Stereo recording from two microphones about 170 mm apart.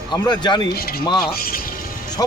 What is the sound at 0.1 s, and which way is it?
Speech, 25° left (ahead or behind).